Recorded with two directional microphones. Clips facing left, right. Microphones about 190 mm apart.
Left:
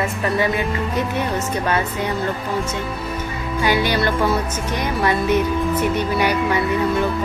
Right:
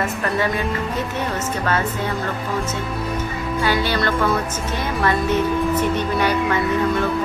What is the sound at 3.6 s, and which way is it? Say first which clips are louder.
Music: left 2 dB; 15° left (ahead or behind).